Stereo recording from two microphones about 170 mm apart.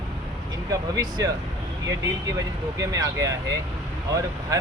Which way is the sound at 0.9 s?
20° right (ahead or behind).